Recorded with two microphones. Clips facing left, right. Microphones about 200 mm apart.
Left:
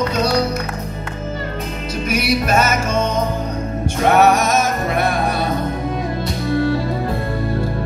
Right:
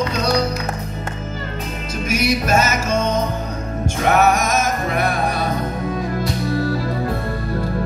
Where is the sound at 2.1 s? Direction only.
55° left (ahead or behind).